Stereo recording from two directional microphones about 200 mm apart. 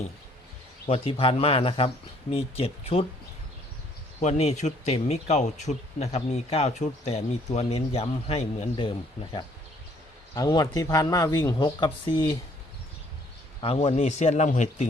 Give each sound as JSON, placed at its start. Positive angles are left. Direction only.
{"t": 0.9, "sound": "speech", "side_deg": 30}
{"t": 4.2, "sound": "speech", "side_deg": 35}
{"t": 10.3, "sound": "speech", "side_deg": 20}
{"t": 13.6, "sound": "speech", "side_deg": 30}